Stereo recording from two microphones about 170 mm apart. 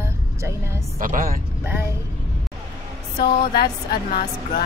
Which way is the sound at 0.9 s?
55° right (ahead or behind).